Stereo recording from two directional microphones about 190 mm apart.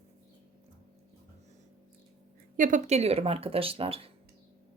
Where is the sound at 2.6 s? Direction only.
40° right (ahead or behind).